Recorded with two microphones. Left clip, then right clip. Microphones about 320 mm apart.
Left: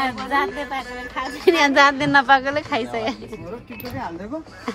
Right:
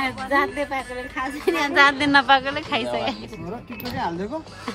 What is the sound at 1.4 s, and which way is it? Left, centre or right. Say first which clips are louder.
Speech: left 7 dB; left.